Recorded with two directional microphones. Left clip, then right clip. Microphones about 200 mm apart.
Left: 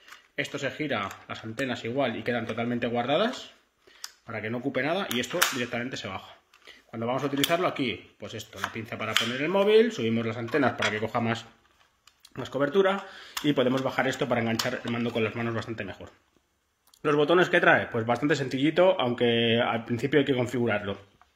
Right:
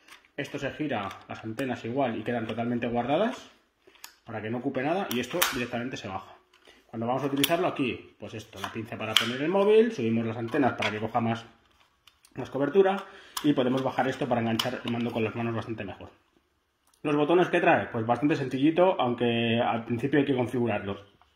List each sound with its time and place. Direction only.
0.4 s speech: 15° left (ahead or behind)